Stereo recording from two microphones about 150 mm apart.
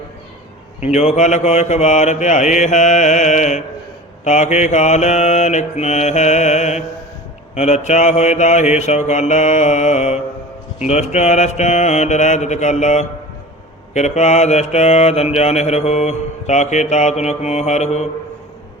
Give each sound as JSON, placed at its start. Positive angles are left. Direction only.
{"t": 0.9, "sound": "mantra", "side_deg": 50}